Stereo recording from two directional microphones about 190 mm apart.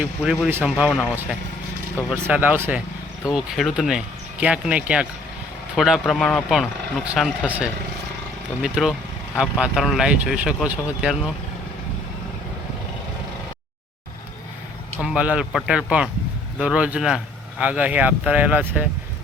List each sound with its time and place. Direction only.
0.0 s speech: 5° right (ahead or behind)
2.0 s speech: 10° right (ahead or behind)
15.0 s speech: 5° right (ahead or behind)